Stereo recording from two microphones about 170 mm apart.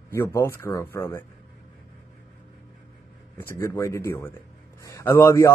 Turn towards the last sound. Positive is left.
turn(degrees=20)  # may be behind; listen again after turning